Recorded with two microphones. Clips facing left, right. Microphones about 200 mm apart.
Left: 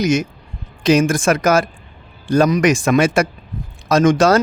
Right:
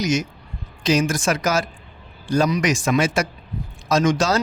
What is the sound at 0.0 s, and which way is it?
Speech, 55° left (ahead or behind).